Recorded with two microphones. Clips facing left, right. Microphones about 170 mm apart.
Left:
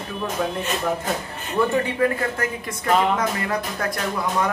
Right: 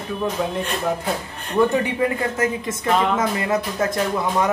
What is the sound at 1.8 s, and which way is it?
Speech, 20° right (ahead or behind).